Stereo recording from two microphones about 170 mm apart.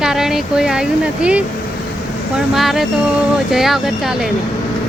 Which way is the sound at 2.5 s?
Centre (ahead or behind).